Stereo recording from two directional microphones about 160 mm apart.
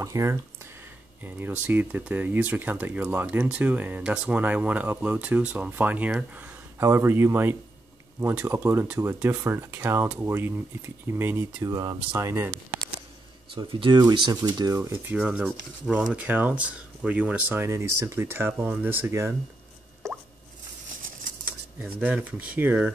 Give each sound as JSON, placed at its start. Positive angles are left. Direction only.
{"t": 0.0, "sound": "speech", "side_deg": -20}
{"t": 11.7, "sound": "speech", "side_deg": -25}
{"t": 13.6, "sound": "speech", "side_deg": -30}
{"t": 21.5, "sound": "speech", "side_deg": -10}